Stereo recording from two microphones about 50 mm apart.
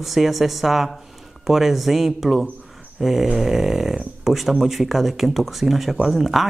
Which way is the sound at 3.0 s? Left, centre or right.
Centre.